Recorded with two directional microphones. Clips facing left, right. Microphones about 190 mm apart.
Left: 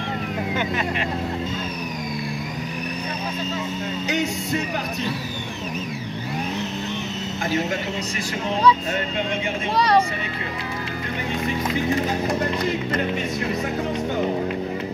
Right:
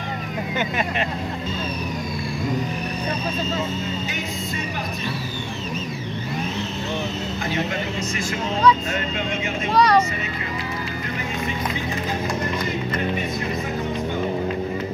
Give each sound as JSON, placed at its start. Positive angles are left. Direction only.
{"t": 9.8, "sound": "vehicle", "side_deg": 25}